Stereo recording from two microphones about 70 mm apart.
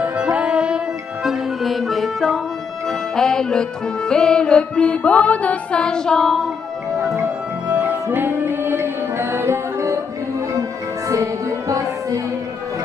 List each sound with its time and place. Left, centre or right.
0.0 s music: centre
8.1 s music: right
11.1 s music: right